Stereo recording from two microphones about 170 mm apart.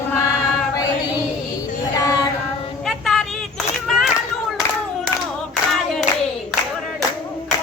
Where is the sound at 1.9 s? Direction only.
20° left (ahead or behind).